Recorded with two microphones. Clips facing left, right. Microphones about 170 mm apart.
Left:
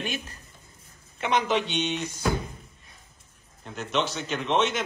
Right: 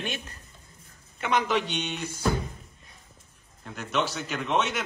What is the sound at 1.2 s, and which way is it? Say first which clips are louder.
Speech: left 1 dB; 25° left (ahead or behind).